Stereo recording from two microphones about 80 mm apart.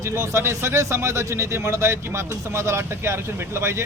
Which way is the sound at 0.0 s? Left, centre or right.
Right.